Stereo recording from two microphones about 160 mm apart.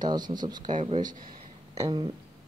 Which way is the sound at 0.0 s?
25° right (ahead or behind).